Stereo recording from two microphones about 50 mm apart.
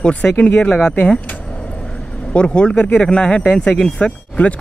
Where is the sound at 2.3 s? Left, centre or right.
Left.